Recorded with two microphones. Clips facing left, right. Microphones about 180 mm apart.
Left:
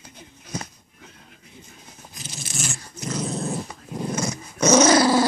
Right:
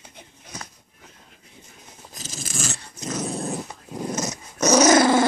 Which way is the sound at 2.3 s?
90° right.